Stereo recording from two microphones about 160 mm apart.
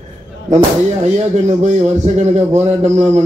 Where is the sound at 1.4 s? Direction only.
45° right (ahead or behind).